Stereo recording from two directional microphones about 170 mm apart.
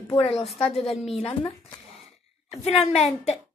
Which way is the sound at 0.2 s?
35° left (ahead or behind).